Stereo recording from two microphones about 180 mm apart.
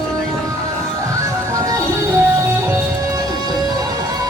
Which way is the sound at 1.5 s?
20° right (ahead or behind).